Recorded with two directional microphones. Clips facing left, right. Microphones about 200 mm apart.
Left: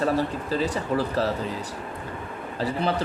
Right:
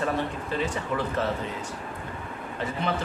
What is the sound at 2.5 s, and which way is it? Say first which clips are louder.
Speech: left 4 dB; 35° left (ahead or behind).